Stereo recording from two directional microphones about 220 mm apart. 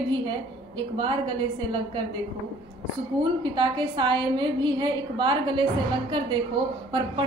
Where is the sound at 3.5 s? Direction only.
20° right (ahead or behind).